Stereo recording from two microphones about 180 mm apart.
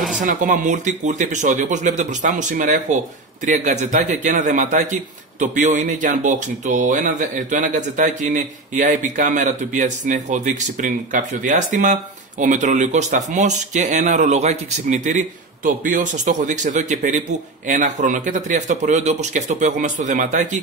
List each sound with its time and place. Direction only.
0.2 s speech: 45° right (ahead or behind)